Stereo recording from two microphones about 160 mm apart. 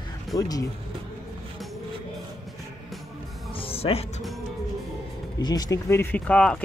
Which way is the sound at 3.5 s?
35° left (ahead or behind).